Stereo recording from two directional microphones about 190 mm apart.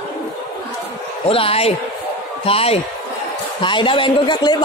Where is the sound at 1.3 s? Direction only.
30° left (ahead or behind).